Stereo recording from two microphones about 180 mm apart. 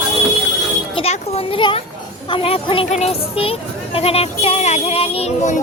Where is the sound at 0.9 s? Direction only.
35° left (ahead or behind).